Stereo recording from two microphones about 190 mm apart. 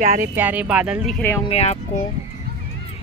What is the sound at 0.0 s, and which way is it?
Speech, 45° right (ahead or behind).